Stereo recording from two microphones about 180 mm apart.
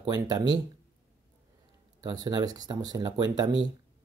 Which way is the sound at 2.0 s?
20° right (ahead or behind).